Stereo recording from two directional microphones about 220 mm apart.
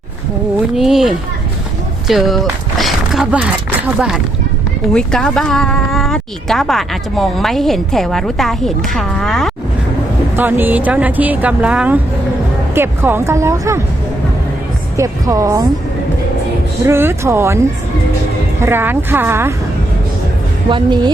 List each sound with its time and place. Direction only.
0.8 s speech: centre (ahead or behind)
14.9 s speech: 15° right (ahead or behind)
16.8 s speech: 10° right (ahead or behind)
18.6 s speech: 10° right (ahead or behind)
20.7 s a woman's voice: 20° right (ahead or behind)